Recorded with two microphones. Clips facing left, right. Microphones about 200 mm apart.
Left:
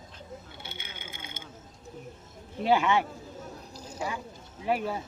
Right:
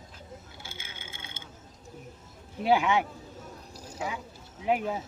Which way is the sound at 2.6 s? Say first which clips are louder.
Even; 15° right (ahead or behind).